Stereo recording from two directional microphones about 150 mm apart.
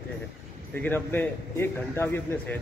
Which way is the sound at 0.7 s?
15° left (ahead or behind).